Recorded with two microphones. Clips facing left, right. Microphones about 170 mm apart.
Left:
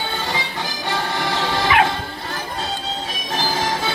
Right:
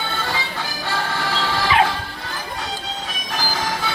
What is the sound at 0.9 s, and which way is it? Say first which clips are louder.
Music: left 1 dB; 15° left (ahead or behind).